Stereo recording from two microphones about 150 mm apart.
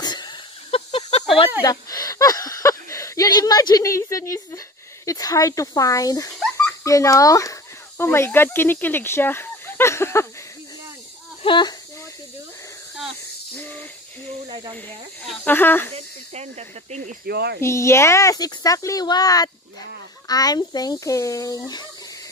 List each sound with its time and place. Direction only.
0.0 s a sound: 30° left (ahead or behind)
1.6 s a child's voice: 25° left (ahead or behind)
11.4 s speech: 30° left (ahead or behind)
13.6 s hiss: 10° left (ahead or behind)
14.5 s speech: 30° right (ahead or behind)
15.2 s speech: 10° left (ahead or behind)
16.3 s speech: 50° right (ahead or behind)
17.3 s speech: 90° right
17.6 s a child's voice: 20° left (ahead or behind)